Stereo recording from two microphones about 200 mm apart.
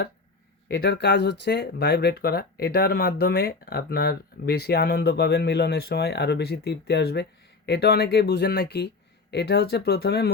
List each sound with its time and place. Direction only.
0.7 s speech: 55° left (ahead or behind)